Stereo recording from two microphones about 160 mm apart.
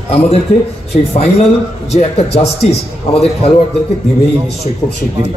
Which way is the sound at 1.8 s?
40° left (ahead or behind).